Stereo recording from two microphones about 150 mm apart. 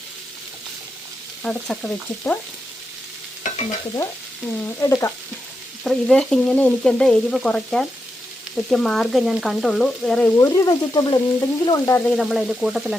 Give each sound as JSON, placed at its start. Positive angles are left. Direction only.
{"t": 1.5, "sound": "frying", "side_deg": 0}
{"t": 4.8, "sound": "frying", "side_deg": 20}
{"t": 5.8, "sound": "frying", "side_deg": 5}
{"t": 10.3, "sound": "frying", "side_deg": 20}
{"t": 12.0, "sound": "frying", "side_deg": 0}